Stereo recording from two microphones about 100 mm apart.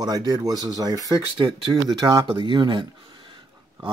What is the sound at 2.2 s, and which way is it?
Speech, 55° right (ahead or behind).